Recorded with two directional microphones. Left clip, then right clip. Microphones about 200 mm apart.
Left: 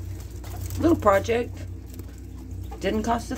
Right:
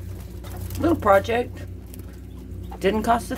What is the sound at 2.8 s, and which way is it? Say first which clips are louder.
Speech: right 5 dB; 15° right (ahead or behind).